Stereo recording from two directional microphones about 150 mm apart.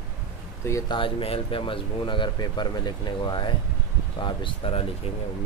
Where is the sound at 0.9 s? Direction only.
35° left (ahead or behind).